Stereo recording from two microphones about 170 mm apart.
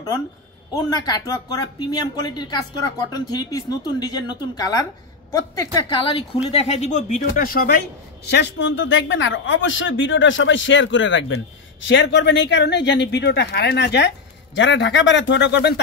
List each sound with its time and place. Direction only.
0.7 s speech: 25° left (ahead or behind); by 7.8 s 60° left (ahead or behind)
8.3 s speech: 90° left